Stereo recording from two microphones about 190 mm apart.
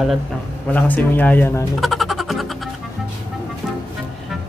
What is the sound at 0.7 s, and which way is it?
Speech, 10° left (ahead or behind).